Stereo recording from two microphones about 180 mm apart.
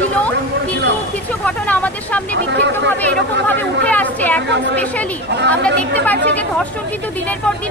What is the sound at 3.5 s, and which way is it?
Speech, 10° left (ahead or behind).